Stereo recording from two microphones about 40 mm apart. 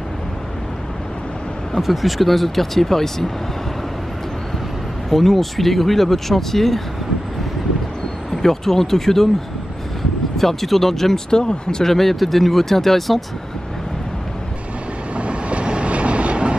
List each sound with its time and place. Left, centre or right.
1.8 s speech: centre
5.1 s speech: centre
8.3 s speech: centre
10.3 s speech: centre
11.3 s speech: centre
11.9 s speech: centre
15.1 s train: right